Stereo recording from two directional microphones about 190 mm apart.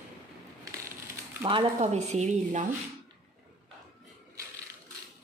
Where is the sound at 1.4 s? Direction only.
30° right (ahead or behind).